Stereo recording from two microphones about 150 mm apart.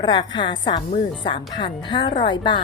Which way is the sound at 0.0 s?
30° left (ahead or behind).